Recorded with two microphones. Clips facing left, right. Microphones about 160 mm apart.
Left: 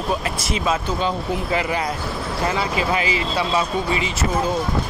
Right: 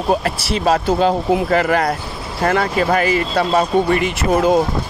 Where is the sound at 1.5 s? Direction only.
55° right (ahead or behind).